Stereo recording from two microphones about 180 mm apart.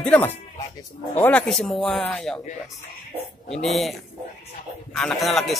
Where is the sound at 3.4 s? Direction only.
Centre (ahead or behind).